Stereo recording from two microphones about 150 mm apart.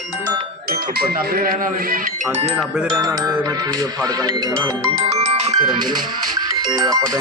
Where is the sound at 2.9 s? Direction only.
25° right (ahead or behind).